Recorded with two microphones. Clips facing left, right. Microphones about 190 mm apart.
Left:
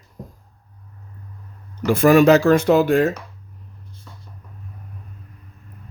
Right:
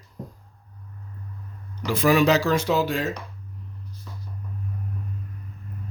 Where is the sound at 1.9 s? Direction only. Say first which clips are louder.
Left 7 dB; 50° left (ahead or behind).